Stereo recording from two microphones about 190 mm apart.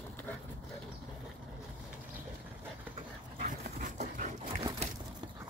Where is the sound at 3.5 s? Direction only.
40° right (ahead or behind).